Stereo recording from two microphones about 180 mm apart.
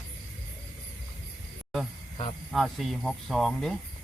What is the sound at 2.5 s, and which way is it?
Speech, centre (ahead or behind).